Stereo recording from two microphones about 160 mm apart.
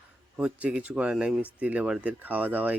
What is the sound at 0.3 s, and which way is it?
Speech, 5° right (ahead or behind).